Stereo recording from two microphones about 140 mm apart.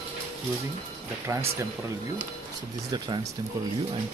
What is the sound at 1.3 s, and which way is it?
Speech, 20° right (ahead or behind).